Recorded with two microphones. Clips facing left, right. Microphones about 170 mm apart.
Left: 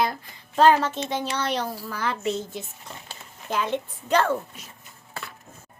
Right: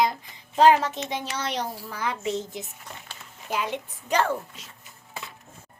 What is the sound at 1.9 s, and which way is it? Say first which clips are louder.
Speech: left 2 dB; 15° right (ahead or behind).